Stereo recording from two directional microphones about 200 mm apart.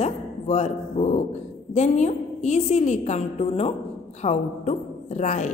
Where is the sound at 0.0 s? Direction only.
35° left (ahead or behind).